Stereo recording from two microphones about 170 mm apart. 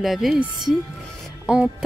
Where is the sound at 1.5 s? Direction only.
5° right (ahead or behind).